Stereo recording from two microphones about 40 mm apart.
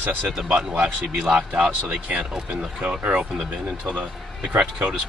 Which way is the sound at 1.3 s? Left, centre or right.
Right.